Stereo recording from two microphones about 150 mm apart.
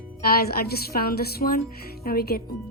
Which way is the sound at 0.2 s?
90° left.